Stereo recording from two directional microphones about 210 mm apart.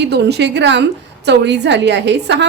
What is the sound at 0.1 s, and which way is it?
A woman's voice, 55° right (ahead or behind).